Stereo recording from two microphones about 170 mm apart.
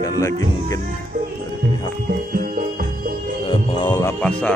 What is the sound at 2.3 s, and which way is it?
Music, 55° right (ahead or behind).